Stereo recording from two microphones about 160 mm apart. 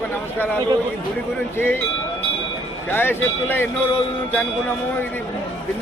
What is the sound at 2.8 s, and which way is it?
Speech, 15° left (ahead or behind).